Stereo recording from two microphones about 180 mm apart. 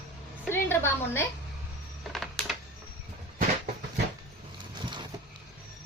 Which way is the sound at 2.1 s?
Centre (ahead or behind).